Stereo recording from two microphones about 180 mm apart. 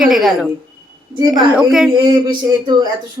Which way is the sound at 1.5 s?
5° right (ahead or behind).